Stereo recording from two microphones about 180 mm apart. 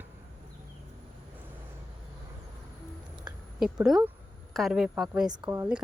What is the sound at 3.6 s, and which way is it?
A woman's voice, centre (ahead or behind).